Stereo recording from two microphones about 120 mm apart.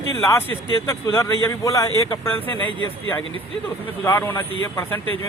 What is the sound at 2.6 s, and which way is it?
Speech, 45° right (ahead or behind).